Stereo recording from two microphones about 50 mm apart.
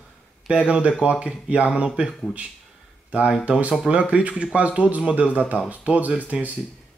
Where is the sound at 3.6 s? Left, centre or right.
Right.